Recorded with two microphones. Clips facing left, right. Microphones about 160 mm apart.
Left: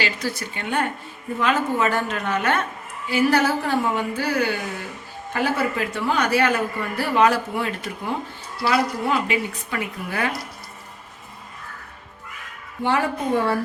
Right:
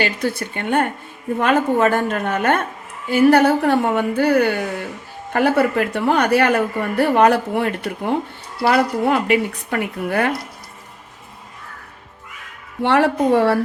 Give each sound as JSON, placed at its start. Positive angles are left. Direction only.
{"t": 0.0, "sound": "a woman's voice", "side_deg": -55}
{"t": 12.8, "sound": "speech", "side_deg": -70}